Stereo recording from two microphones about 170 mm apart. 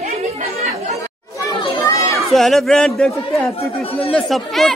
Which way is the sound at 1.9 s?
20° left (ahead or behind).